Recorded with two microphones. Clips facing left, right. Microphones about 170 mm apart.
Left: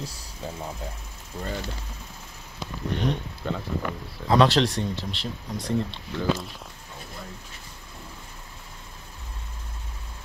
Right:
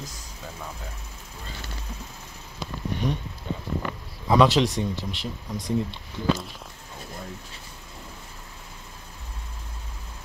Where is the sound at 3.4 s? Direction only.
90° left.